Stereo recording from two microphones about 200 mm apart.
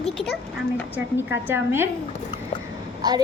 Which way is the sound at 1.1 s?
10° right (ahead or behind).